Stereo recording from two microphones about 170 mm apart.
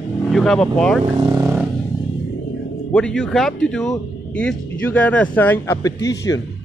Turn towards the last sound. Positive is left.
turn(degrees=20)  # may be behind; listen again after turning